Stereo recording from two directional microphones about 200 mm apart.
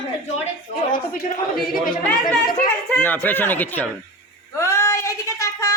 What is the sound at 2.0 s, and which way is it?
A man's voice, 5° left (ahead or behind).